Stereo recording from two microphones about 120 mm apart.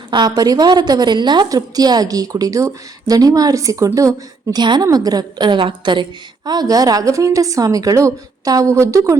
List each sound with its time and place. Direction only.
0.1 s a woman's voice: 40° right (ahead or behind)
4.5 s a woman's voice: 35° right (ahead or behind)